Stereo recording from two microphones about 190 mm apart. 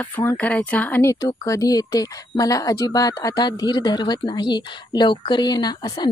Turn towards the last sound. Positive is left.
turn(degrees=20)  # may be behind; listen again after turning